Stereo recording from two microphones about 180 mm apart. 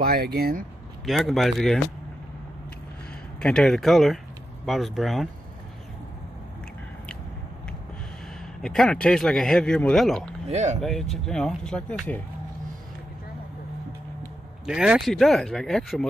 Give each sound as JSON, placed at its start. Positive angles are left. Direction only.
{"t": 0.0, "sound": "speech", "side_deg": -60}
{"t": 1.0, "sound": "speech", "side_deg": 0}
{"t": 3.3, "sound": "speech", "side_deg": 5}
{"t": 8.6, "sound": "speech", "side_deg": 5}
{"t": 10.5, "sound": "speech", "side_deg": -40}
{"t": 10.8, "sound": "speech", "side_deg": 0}
{"t": 14.7, "sound": "speech", "side_deg": -5}